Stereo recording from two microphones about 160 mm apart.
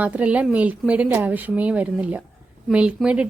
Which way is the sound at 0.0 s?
10° right (ahead or behind).